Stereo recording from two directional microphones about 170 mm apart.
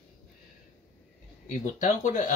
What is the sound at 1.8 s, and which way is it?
Speech, 45° left (ahead or behind).